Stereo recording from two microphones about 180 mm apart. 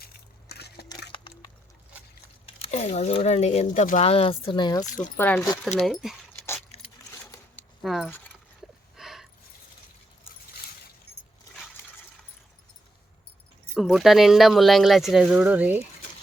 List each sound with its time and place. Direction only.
0.0 s crushing: 65° left (ahead or behind)
2.6 s speech: 40° left (ahead or behind); by 4.9 s 25° left (ahead or behind)
4.9 s speech: 45° left (ahead or behind)
5.1 s speech: 10° left (ahead or behind)
5.8 s speech: centre (ahead or behind)
6.7 s keys jangling: 35° left (ahead or behind)
7.5 s keys jangling: centre (ahead or behind)
9.0 s a sound: centre (ahead or behind)
13.7 s speech: centre (ahead or behind)